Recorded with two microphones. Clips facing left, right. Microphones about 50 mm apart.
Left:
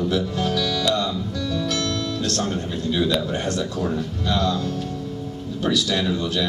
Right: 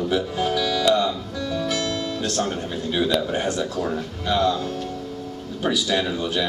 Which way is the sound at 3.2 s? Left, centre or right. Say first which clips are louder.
Right 1 dB; centre.